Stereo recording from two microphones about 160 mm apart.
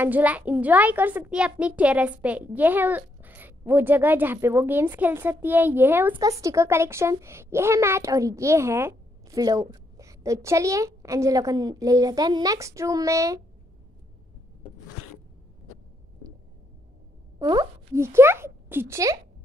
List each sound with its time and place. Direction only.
0.0 s a child's voice: 10° right (ahead or behind)
17.4 s speech: 25° right (ahead or behind)